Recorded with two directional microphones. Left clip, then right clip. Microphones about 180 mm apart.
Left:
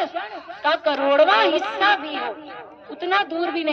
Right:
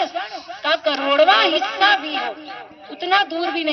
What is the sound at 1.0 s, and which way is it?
A woman's voice, 40° left (ahead or behind).